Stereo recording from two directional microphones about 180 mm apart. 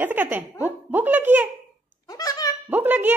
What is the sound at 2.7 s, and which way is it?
Speech, 10° right (ahead or behind).